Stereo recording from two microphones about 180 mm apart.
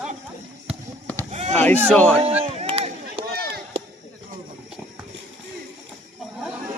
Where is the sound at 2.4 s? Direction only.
35° right (ahead or behind).